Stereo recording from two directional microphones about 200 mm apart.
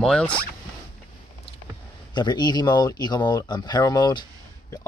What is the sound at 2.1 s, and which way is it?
Speech, 20° left (ahead or behind).